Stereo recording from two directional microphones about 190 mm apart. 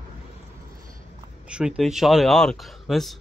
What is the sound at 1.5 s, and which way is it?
Speech, 5° right (ahead or behind).